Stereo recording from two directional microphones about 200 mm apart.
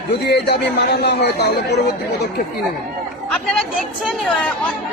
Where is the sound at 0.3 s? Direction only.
55° left (ahead or behind).